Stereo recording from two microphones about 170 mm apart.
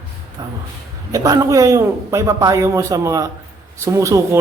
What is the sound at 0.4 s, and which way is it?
A man's voice, 25° right (ahead or behind).